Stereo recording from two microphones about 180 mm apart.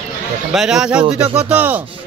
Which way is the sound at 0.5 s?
5° right (ahead or behind).